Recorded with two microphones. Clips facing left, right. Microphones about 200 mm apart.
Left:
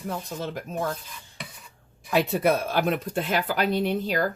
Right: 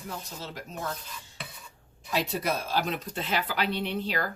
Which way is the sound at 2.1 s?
55° left (ahead or behind).